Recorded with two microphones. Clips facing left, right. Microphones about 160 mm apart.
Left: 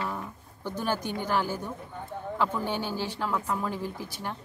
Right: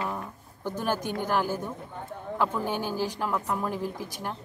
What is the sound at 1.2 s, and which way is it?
Speech, centre (ahead or behind).